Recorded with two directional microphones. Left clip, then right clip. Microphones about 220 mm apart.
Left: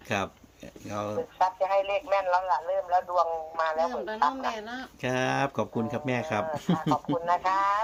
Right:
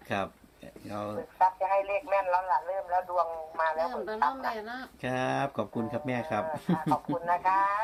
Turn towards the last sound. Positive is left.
turn(degrees=40)  # may be behind; listen again after turning